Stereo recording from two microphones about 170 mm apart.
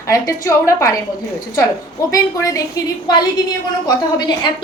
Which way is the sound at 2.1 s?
20° left (ahead or behind).